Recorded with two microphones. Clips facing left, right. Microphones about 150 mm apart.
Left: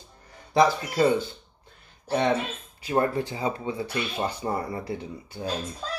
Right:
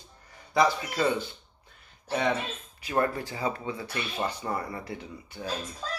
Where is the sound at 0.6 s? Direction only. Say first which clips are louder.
Left 4 dB; 30° left (ahead or behind).